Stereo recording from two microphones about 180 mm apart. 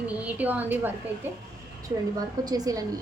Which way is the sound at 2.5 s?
20° right (ahead or behind).